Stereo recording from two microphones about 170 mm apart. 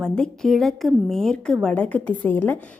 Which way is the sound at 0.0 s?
5° left (ahead or behind).